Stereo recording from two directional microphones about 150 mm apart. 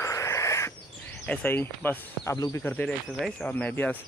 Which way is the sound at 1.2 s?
10° left (ahead or behind).